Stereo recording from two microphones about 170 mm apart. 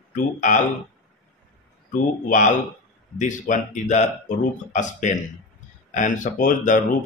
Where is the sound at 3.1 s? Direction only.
50° left (ahead or behind).